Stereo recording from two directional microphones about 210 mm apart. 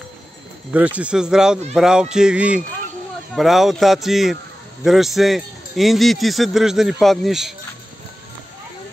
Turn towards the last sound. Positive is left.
turn(degrees=0)  # may be behind; listen again after turning